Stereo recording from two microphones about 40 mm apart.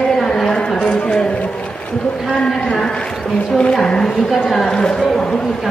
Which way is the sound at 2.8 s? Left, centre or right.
Left.